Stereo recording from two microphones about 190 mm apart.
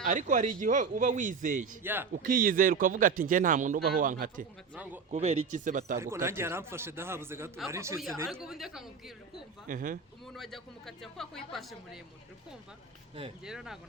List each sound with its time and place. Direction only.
0.0 s speech: 40° right (ahead or behind)
1.8 s a man's voice: 10° right (ahead or behind)
2.1 s speech: 45° right (ahead or behind)
4.7 s a man's voice: 10° right (ahead or behind)
5.1 s speech: 40° right (ahead or behind)
6.0 s a man's voice: 15° right (ahead or behind)
8.3 s speech: centre (ahead or behind)
9.6 s speech: 45° right (ahead or behind)
10.3 s speech: centre (ahead or behind)
13.4 s speech: 5° right (ahead or behind)